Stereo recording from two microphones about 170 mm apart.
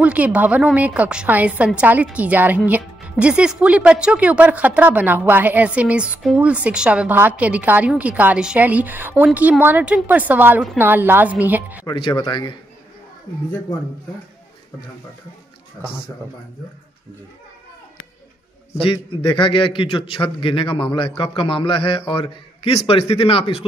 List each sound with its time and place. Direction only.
0.0 s a woman's voice: 10° right (ahead or behind)
11.8 s speech: 25° left (ahead or behind)
19.0 s a man's voice: 30° left (ahead or behind)